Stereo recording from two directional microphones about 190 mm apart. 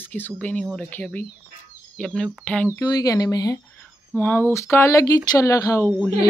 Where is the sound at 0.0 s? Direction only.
10° left (ahead or behind).